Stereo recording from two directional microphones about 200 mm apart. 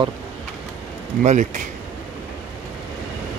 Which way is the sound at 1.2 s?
40° right (ahead or behind).